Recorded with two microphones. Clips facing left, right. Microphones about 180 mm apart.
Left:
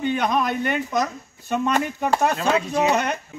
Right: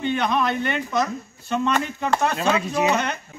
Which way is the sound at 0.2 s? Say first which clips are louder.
Even; 45° left (ahead or behind).